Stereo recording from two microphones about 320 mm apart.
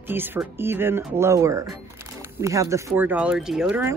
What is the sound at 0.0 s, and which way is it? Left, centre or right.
Speech, centre.